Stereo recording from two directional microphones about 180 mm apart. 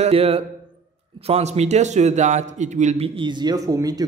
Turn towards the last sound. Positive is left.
turn(degrees=-20)  # may be behind; listen again after turning